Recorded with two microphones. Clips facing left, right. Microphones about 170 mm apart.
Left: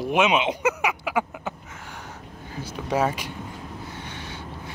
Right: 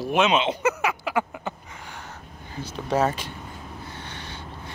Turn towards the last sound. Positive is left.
turn(degrees=10)  # may be behind; listen again after turning